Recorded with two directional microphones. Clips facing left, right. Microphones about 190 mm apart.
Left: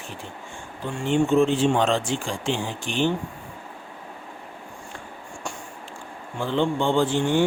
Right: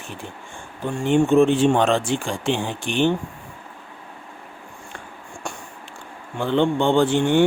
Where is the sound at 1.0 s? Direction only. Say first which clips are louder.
Right 4 dB; 55° right (ahead or behind).